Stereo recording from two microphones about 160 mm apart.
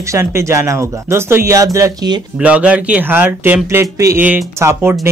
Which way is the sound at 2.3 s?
5° right (ahead or behind).